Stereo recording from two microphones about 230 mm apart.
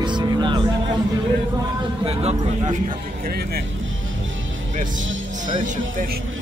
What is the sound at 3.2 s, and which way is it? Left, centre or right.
Speech, right.